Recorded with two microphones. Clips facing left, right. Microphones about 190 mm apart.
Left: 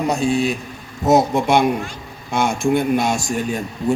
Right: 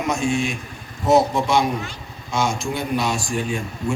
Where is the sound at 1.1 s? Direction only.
55° left (ahead or behind).